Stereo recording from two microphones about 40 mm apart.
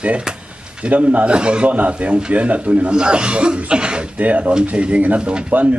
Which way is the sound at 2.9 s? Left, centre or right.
Right.